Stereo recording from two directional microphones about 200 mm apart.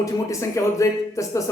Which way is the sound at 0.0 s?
15° left (ahead or behind).